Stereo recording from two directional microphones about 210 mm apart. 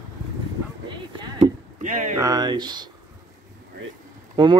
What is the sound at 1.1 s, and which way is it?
Speech, 25° right (ahead or behind).